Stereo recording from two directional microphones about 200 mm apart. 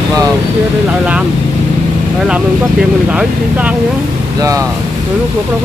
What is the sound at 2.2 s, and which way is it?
Speech, 5° right (ahead or behind).